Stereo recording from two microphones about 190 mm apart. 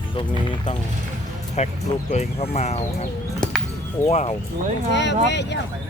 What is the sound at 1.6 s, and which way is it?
Speech, 35° left (ahead or behind).